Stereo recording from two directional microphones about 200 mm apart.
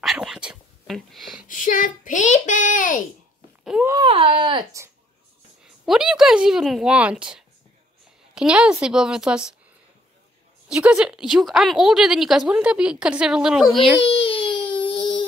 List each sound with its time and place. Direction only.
0.0 s a sound: centre (ahead or behind)
1.5 s a child's voice: 40° left (ahead or behind)
3.6 s a child's voice: 5° right (ahead or behind)
3.9 s speech: 25° right (ahead or behind)
5.9 s a woman's voice: 5° right (ahead or behind)
10.7 s a woman's voice: 5° right (ahead or behind)
14.0 s baby cry: 30° left (ahead or behind)